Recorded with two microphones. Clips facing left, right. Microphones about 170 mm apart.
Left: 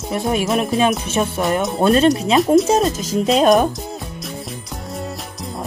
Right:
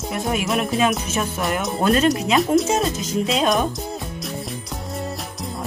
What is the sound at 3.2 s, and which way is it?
Speech, 45° left (ahead or behind).